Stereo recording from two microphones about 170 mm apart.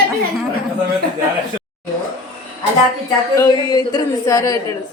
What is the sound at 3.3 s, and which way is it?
A woman's voice, 20° left (ahead or behind).